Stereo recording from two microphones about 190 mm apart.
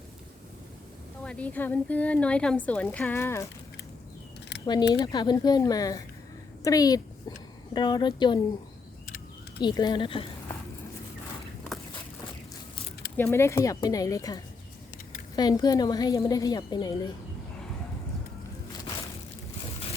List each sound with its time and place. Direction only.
1.2 s a woman's voice: 5° left (ahead or behind)
4.6 s a woman's voice: 20° left (ahead or behind)
9.6 s a woman's voice: 25° left (ahead or behind)
13.1 s a woman's voice: 10° left (ahead or behind)